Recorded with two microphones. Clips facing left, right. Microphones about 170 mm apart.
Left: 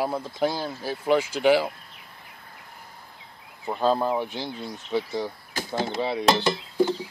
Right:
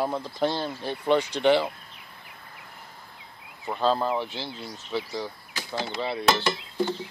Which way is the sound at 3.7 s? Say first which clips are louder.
Left 2 dB; 15° left (ahead or behind).